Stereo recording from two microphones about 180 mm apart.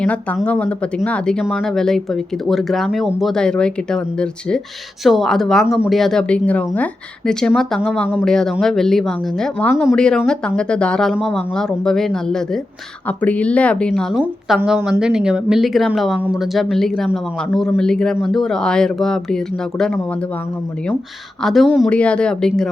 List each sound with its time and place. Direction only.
0.0 s speech: 5° left (ahead or behind)
21.4 s speech: centre (ahead or behind)